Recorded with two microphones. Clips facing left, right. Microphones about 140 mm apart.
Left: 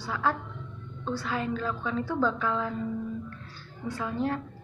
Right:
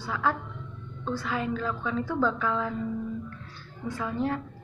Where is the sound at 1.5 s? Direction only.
30° left (ahead or behind).